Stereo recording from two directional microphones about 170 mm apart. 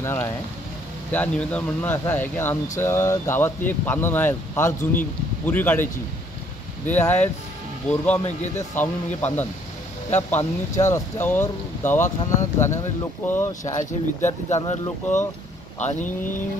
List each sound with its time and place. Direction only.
0.0 s speech: 15° left (ahead or behind)
6.9 s speech: 10° left (ahead or behind)
13.7 s speech: 45° left (ahead or behind)
15.8 s speech: 45° left (ahead or behind)